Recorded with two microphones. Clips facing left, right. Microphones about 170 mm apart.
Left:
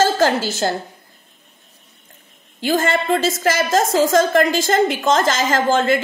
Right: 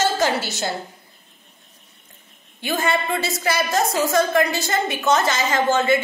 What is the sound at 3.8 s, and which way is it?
A woman's voice, 90° left.